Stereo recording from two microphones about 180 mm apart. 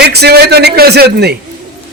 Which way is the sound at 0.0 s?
65° right (ahead or behind).